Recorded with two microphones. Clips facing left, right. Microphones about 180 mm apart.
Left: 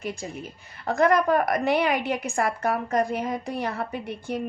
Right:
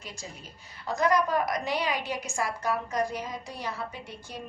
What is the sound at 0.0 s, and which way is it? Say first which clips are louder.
A woman's voice: left 10 dB; 55° left (ahead or behind).